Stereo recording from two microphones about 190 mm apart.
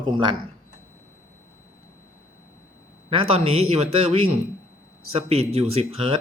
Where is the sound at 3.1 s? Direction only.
30° right (ahead or behind).